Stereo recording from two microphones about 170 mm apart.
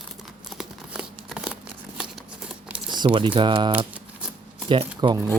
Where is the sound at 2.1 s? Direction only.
5° right (ahead or behind).